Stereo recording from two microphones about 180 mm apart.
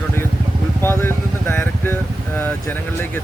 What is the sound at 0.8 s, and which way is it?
Speech, 15° left (ahead or behind).